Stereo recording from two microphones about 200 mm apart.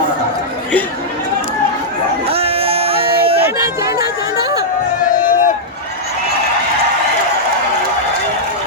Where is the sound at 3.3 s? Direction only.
15° right (ahead or behind).